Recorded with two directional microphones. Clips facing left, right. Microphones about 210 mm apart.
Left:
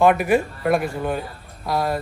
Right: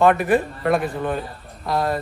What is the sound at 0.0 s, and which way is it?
A man's voice, centre (ahead or behind).